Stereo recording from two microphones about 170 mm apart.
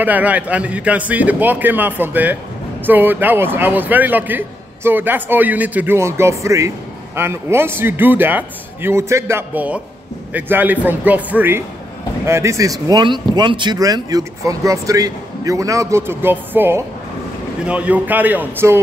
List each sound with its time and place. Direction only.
0.0 s a man's voice: 10° right (ahead or behind)